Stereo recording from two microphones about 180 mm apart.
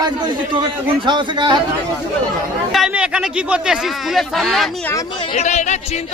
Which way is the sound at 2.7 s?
5° right (ahead or behind).